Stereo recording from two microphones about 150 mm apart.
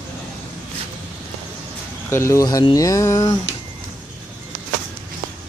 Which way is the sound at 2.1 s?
20° left (ahead or behind).